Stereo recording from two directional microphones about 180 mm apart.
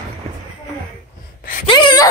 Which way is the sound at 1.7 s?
25° left (ahead or behind).